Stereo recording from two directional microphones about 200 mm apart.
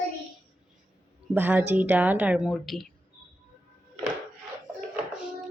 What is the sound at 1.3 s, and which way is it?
A woman's voice, 10° right (ahead or behind).